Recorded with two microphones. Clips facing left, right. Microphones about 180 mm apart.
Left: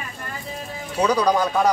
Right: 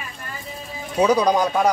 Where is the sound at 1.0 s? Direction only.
10° right (ahead or behind).